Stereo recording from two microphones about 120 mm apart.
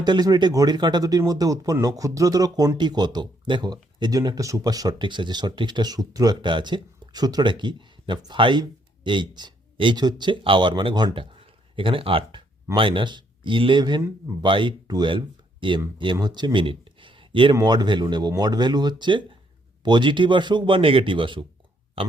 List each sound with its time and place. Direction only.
0.0 s speech: 35° right (ahead or behind)